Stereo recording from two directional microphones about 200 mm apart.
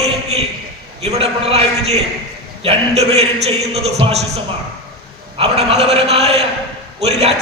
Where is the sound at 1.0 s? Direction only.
30° right (ahead or behind).